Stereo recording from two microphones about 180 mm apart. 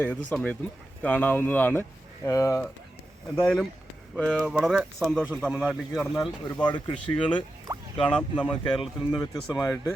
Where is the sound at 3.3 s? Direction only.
5° left (ahead or behind).